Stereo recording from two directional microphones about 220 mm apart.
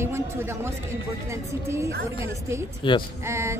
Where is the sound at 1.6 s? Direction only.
15° right (ahead or behind).